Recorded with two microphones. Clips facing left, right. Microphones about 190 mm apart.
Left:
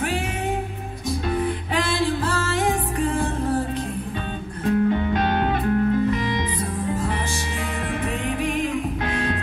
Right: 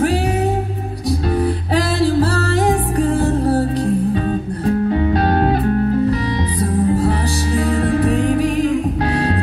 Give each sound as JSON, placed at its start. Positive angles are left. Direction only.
{"t": 1.4, "sound": "music", "side_deg": -35}